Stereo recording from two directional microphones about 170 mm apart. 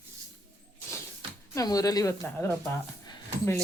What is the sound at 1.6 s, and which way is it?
Speech, 20° left (ahead or behind).